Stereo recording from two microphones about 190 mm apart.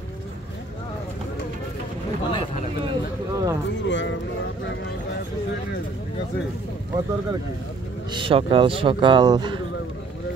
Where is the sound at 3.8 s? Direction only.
70° left (ahead or behind).